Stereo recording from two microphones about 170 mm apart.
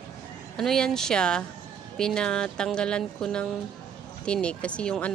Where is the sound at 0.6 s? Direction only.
5° left (ahead or behind).